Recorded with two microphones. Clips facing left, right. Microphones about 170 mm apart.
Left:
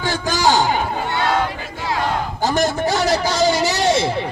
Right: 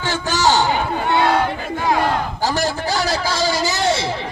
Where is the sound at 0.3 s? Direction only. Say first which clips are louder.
Even; 15° left (ahead or behind).